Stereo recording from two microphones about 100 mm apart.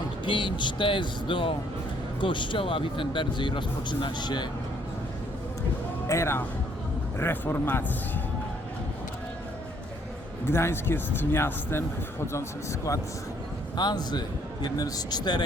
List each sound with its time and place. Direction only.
0.3 s speech: 55° left (ahead or behind)
6.1 s a man's voice: 25° left (ahead or behind)
10.4 s a man's voice: 25° left (ahead or behind)
13.7 s speech: 45° left (ahead or behind)